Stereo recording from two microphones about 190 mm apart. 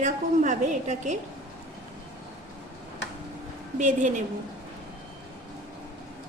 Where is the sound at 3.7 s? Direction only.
40° right (ahead or behind).